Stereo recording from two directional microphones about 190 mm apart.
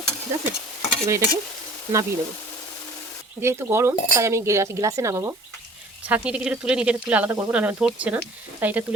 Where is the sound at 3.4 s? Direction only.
15° right (ahead or behind).